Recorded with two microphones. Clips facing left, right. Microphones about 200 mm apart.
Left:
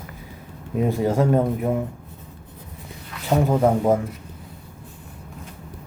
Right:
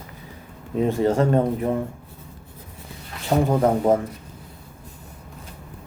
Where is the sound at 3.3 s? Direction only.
10° left (ahead or behind).